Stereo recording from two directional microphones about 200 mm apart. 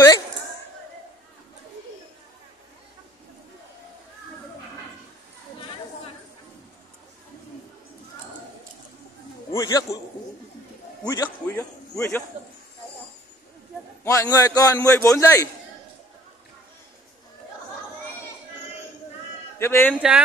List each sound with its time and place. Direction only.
9.5 s a man's voice: 20° left (ahead or behind)
11.1 s a man's voice: 15° left (ahead or behind)
14.0 s a man's voice: 15° left (ahead or behind)
19.6 s a man's voice: 10° left (ahead or behind)